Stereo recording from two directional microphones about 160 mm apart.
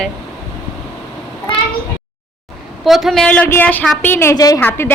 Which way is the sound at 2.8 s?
Centre (ahead or behind).